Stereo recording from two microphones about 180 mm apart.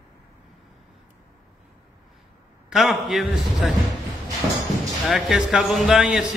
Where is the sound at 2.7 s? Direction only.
Centre (ahead or behind).